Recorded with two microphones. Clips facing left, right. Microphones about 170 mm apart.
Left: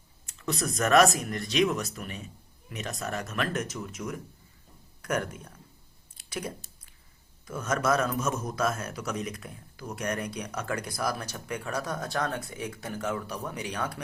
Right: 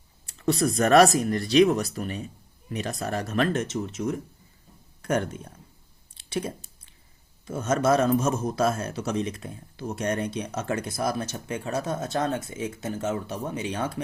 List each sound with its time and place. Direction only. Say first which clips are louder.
0.3 s a man's voice: right 8 dB; 30° right (ahead or behind)
6.1 s a sound: right 6 dB; 30° right (ahead or behind)
7.4 s a man's voice: right 5 dB; 25° right (ahead or behind)